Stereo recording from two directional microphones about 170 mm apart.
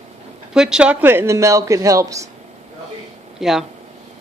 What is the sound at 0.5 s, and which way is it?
Speech, 5° right (ahead or behind).